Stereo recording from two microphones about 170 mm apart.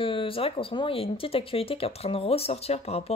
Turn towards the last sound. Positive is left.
turn(degrees=40)  # may be behind; listen again after turning